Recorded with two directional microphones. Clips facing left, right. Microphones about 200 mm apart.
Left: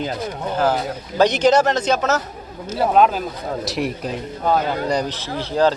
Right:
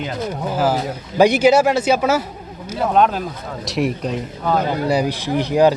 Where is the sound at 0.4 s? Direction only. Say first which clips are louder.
Even; 5° right (ahead or behind).